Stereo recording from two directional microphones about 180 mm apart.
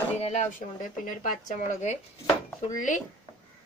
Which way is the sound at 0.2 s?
40° left (ahead or behind).